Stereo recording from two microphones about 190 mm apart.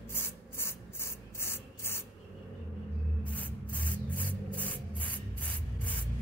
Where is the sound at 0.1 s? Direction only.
10° left (ahead or behind).